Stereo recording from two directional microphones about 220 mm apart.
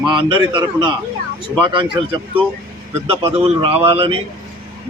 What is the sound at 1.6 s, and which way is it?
Speech, 20° right (ahead or behind).